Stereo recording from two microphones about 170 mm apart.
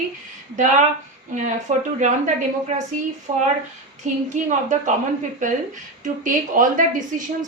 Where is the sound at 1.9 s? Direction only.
45° right (ahead or behind).